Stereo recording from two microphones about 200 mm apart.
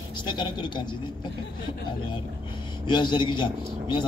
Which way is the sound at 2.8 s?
20° left (ahead or behind).